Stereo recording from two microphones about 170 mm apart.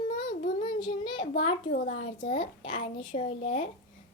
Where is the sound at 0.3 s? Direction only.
50° left (ahead or behind).